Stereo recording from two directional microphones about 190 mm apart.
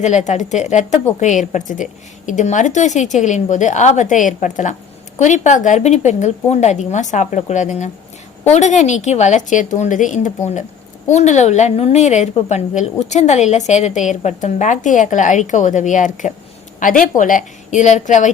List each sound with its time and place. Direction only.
0.0 s a woman's voice: 40° left (ahead or behind)